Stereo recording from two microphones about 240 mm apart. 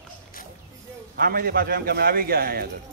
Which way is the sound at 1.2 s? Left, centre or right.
Right.